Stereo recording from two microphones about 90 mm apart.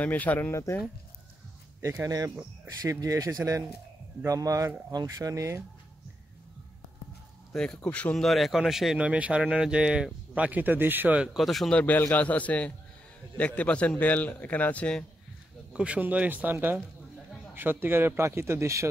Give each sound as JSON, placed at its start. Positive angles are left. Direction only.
{"t": 0.0, "sound": "a man's voice", "side_deg": 15}
{"t": 0.5, "sound": "speech", "side_deg": 30}
{"t": 1.8, "sound": "speech", "side_deg": -35}
{"t": 7.5, "sound": "speech", "side_deg": 5}
{"t": 11.3, "sound": "speech", "side_deg": 0}
{"t": 11.7, "sound": "a man's voice", "side_deg": 20}
{"t": 15.7, "sound": "speech", "side_deg": -10}